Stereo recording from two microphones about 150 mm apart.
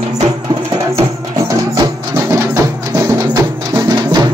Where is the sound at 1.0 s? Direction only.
25° right (ahead or behind).